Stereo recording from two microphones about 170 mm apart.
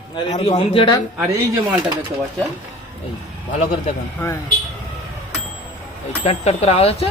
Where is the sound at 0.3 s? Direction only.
25° left (ahead or behind).